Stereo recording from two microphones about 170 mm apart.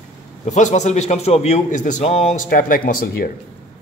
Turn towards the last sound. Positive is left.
turn(degrees=60)  # may be behind; listen again after turning